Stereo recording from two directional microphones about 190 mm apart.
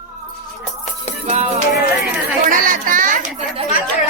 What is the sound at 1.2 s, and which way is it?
Music, 35° right (ahead or behind).